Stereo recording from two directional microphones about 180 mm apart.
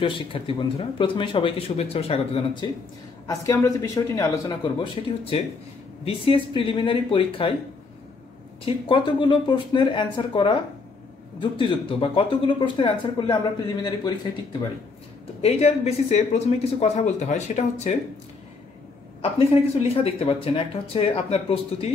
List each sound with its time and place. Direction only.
0.0 s speech: 30° left (ahead or behind)
4.6 s speech: 30° left (ahead or behind)
8.6 s speech: 30° left (ahead or behind)
15.4 s speech: 35° left (ahead or behind)
19.3 s speech: 35° left (ahead or behind)